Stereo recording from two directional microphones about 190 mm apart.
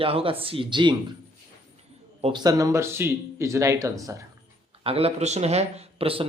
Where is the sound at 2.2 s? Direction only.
20° right (ahead or behind).